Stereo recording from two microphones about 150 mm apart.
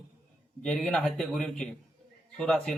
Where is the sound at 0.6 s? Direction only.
5° left (ahead or behind).